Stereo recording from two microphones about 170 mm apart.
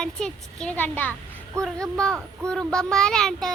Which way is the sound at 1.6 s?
20° right (ahead or behind).